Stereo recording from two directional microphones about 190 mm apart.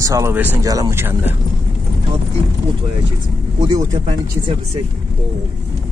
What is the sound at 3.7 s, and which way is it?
Speech, 20° right (ahead or behind).